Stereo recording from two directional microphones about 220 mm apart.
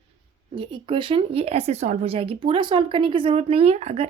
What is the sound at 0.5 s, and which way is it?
Speech, 25° right (ahead or behind).